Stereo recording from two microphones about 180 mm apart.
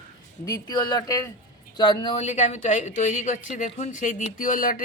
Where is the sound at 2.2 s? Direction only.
40° left (ahead or behind).